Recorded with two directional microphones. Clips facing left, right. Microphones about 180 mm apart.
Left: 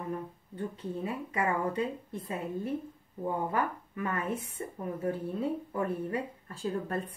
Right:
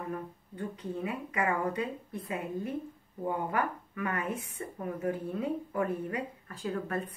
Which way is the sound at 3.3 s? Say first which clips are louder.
Even; 25° left (ahead or behind).